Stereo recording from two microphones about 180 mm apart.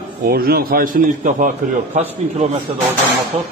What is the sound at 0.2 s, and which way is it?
A man's voice, 60° right (ahead or behind).